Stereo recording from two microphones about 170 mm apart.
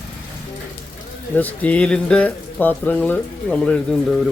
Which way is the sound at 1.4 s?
10° left (ahead or behind).